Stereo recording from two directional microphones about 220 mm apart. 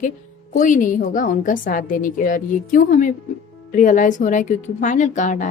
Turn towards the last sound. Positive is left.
turn(degrees=35)  # may be behind; listen again after turning